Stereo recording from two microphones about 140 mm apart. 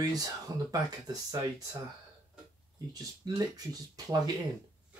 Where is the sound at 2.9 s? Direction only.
25° right (ahead or behind).